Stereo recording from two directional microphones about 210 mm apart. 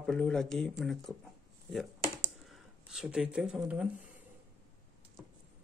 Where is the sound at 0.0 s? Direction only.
Centre (ahead or behind).